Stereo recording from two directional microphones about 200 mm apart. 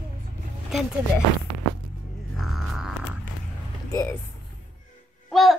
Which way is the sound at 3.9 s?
20° left (ahead or behind).